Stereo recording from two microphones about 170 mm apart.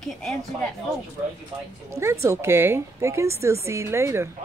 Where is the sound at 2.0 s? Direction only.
15° right (ahead or behind).